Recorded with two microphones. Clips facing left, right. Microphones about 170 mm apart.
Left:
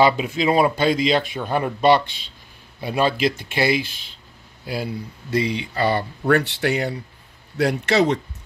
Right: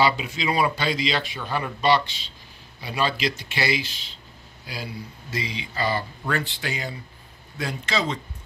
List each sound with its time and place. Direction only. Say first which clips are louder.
0.0 s speech: left 5 dB; 50° left (ahead or behind)
5.3 s speech: left 9 dB; 60° left (ahead or behind)